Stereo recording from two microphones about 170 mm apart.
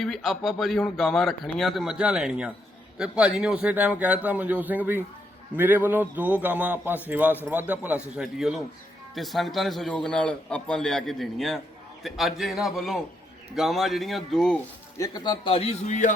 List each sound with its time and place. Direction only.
0.0 s a man's voice: centre (ahead or behind)
14.9 s a man's voice: 20° left (ahead or behind); by 16.1 s 45° left (ahead or behind)